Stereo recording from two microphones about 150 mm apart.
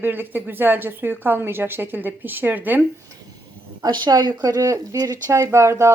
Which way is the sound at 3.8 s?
30° right (ahead or behind).